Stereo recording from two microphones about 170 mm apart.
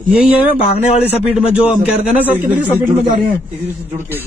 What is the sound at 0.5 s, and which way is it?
Speech, 40° left (ahead or behind).